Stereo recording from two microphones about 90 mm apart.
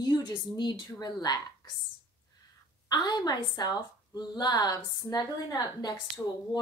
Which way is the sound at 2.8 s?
50° left (ahead or behind).